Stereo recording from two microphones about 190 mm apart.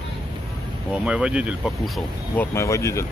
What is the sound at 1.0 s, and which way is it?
Speech, 5° right (ahead or behind).